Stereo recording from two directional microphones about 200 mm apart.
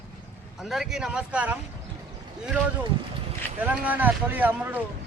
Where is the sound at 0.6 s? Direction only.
Centre (ahead or behind).